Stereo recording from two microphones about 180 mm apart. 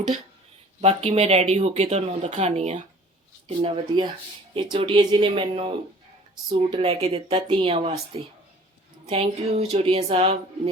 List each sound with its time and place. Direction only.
0.8 s speech: 35° right (ahead or behind)